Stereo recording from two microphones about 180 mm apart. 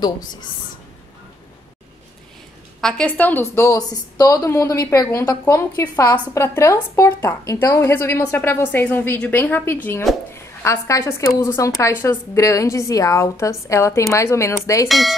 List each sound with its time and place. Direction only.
2.8 s a woman's voice: 5° left (ahead or behind)
14.9 s speech: centre (ahead or behind)